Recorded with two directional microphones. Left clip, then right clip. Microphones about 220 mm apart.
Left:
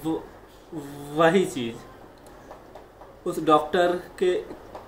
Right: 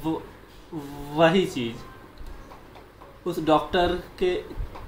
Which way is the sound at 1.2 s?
Centre (ahead or behind).